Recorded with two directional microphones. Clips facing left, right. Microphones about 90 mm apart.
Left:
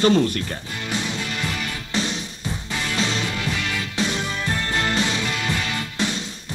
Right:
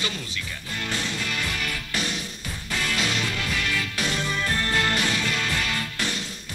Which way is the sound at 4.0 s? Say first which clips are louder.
Left 7 dB; 25° left (ahead or behind).